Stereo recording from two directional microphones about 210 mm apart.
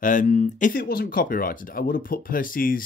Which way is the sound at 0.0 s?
40° left (ahead or behind).